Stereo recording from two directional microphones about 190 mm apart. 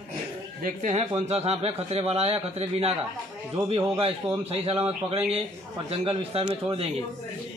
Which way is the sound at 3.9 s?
30° right (ahead or behind).